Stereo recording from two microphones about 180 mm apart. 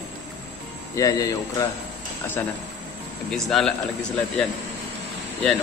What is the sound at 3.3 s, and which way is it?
Speech, centre (ahead or behind).